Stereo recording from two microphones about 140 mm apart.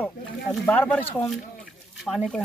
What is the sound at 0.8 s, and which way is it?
Speech, 15° left (ahead or behind).